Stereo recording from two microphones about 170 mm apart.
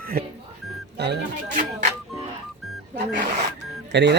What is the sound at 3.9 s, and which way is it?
Speech, 90° right.